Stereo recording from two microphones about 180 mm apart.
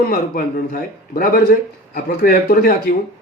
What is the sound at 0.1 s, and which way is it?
A man's voice, 55° left (ahead or behind).